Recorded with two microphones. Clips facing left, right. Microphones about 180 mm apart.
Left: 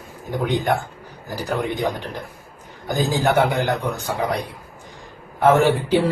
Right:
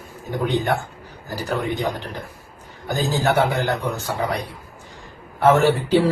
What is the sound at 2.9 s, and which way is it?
Speech, 15° left (ahead or behind).